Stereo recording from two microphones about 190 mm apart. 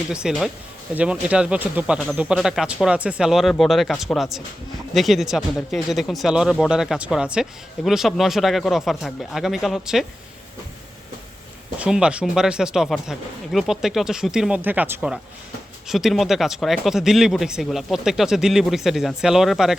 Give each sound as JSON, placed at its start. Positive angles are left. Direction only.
{"t": 0.1, "sound": "speech", "side_deg": -5}
{"t": 11.8, "sound": "speech", "side_deg": -5}